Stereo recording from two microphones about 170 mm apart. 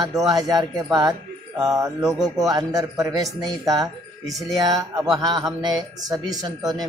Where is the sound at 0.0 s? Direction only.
Centre (ahead or behind).